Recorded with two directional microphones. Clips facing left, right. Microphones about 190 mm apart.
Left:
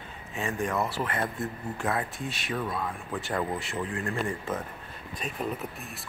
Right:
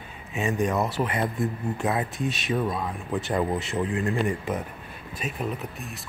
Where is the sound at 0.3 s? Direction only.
20° right (ahead or behind).